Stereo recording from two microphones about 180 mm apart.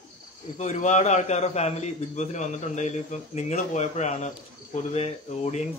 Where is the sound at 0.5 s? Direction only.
40° left (ahead or behind).